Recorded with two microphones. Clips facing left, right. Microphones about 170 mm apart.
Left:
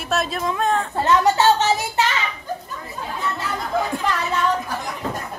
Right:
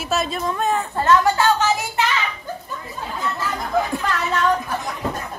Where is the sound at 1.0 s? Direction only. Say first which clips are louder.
Even; 20° left (ahead or behind).